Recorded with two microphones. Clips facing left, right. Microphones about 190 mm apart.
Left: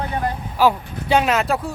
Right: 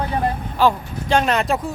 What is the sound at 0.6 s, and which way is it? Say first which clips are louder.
Speech: even; 10° left (ahead or behind).